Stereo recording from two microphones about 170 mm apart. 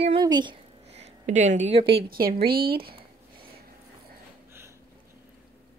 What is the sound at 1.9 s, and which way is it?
Speech, 75° right (ahead or behind).